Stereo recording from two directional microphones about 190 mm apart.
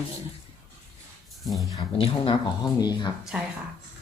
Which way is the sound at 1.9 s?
25° left (ahead or behind).